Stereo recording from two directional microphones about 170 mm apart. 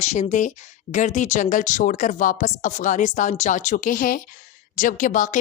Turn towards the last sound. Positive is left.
turn(degrees=50)  # may be behind; listen again after turning